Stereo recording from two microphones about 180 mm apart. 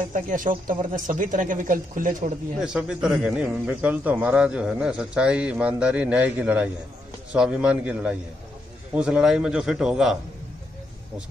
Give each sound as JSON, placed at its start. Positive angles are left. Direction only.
{"t": 0.0, "sound": "speech", "side_deg": -45}
{"t": 2.6, "sound": "a man's voice", "side_deg": -5}